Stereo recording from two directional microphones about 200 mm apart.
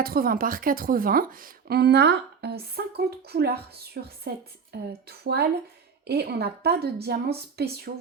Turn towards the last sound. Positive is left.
turn(degrees=-55)  # may be behind; listen again after turning